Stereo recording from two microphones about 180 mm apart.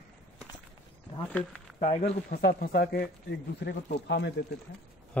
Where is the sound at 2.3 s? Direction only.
55° left (ahead or behind).